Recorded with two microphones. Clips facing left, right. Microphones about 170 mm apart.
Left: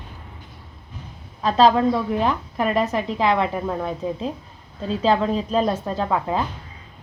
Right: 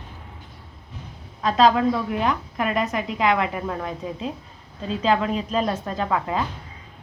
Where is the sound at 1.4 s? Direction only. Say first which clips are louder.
Left 2 dB; 30° left (ahead or behind).